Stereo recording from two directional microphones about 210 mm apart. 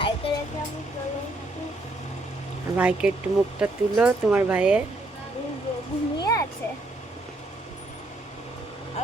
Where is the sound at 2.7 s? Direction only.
5° right (ahead or behind).